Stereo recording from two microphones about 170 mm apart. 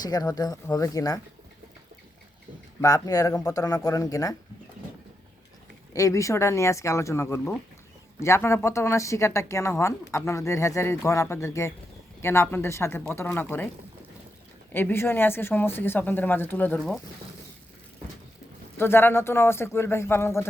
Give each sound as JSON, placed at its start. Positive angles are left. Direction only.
{"t": 0.0, "sound": "speech", "side_deg": 20}
{"t": 2.8, "sound": "speech", "side_deg": 20}
{"t": 5.9, "sound": "a woman's voice", "side_deg": 20}
{"t": 14.7, "sound": "a woman's voice", "side_deg": 10}
{"t": 18.8, "sound": "a woman's voice", "side_deg": 15}